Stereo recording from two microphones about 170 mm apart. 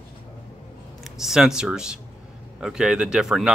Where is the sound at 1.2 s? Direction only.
5° right (ahead or behind).